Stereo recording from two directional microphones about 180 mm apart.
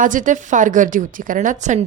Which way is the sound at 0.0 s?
45° right (ahead or behind).